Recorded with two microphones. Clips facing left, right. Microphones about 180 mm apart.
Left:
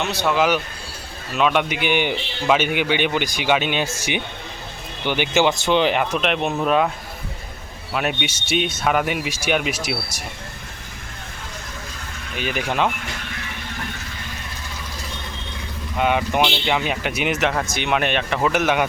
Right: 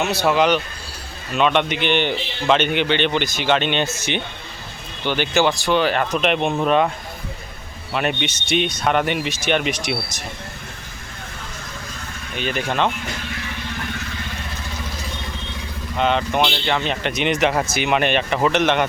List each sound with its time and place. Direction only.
0.0 s speech: 5° right (ahead or behind)
0.3 s a man's voice: 5° left (ahead or behind)
7.9 s speech: 5° left (ahead or behind)
12.4 s a man's voice: 10° left (ahead or behind)
16.0 s a man's voice: 10° left (ahead or behind)
17.5 s speech: 5° right (ahead or behind)